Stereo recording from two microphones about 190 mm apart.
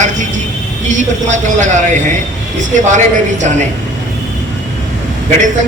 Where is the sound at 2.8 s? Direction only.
40° right (ahead or behind).